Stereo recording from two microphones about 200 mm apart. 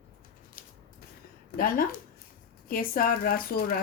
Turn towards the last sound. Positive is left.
turn(degrees=45)  # may be behind; listen again after turning